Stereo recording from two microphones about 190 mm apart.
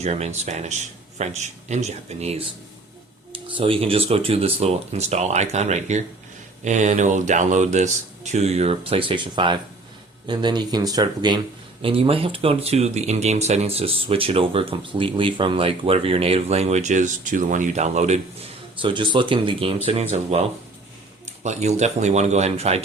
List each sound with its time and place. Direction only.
0.0 s speech: 35° right (ahead or behind)
3.3 s speech: 25° right (ahead or behind)
18.8 s speech: 25° right (ahead or behind)
21.4 s speech: 35° right (ahead or behind)